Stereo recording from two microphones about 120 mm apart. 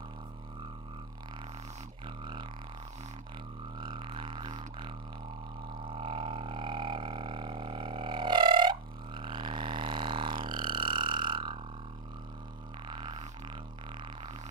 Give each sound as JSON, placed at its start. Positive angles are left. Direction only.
{"t": 2.0, "sound": "didgeridoo", "side_deg": -40}
{"t": 3.8, "sound": "didgeridoo", "side_deg": -40}
{"t": 12.8, "sound": "music", "side_deg": -40}